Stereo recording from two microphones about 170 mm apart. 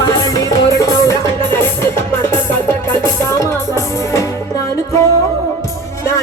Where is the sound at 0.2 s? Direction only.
20° left (ahead or behind).